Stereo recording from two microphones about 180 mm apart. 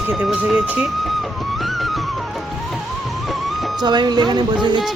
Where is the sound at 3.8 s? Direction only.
25° right (ahead or behind).